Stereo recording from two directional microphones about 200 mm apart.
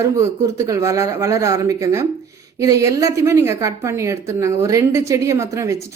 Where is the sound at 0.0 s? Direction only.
15° right (ahead or behind).